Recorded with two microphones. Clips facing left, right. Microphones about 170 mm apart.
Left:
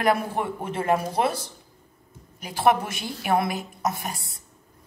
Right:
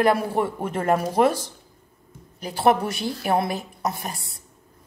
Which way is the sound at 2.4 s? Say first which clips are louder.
Right 2 dB; 35° right (ahead or behind).